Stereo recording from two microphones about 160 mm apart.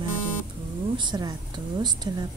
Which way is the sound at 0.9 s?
25° right (ahead or behind).